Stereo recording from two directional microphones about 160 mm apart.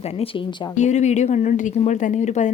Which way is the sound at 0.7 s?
45° left (ahead or behind).